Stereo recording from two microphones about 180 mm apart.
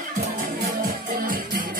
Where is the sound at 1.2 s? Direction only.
55° right (ahead or behind).